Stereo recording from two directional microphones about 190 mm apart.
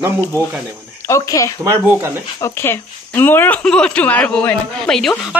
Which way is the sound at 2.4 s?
10° left (ahead or behind).